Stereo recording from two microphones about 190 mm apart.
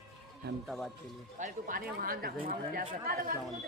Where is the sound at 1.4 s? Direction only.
45° right (ahead or behind).